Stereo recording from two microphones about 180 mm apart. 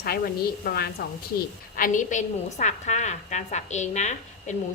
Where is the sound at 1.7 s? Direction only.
45° left (ahead or behind).